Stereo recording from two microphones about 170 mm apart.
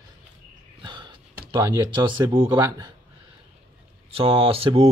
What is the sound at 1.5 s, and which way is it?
Speech, 25° right (ahead or behind).